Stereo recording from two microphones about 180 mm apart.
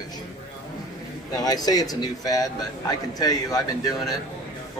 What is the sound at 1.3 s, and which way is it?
Speech, 20° left (ahead or behind).